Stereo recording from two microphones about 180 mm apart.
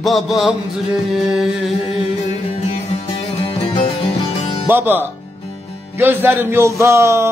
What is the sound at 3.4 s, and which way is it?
Music, 30° left (ahead or behind).